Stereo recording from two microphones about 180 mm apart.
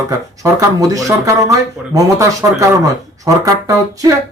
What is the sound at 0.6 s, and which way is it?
Speech, 20° right (ahead or behind).